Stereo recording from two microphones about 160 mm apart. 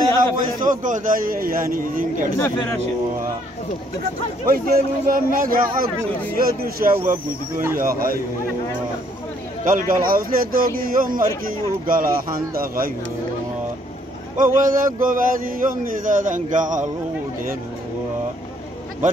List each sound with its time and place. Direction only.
0.6 s speech: 55° right (ahead or behind)
2.3 s speech: 15° left (ahead or behind)
4.5 s speech: 60° right (ahead or behind)
9.7 s speech: 60° right (ahead or behind)
14.3 s speech: 55° right (ahead or behind)